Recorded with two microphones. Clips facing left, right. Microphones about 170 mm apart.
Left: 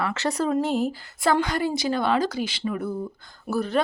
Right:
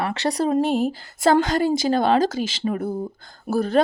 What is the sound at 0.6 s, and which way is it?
Speech, 65° right (ahead or behind).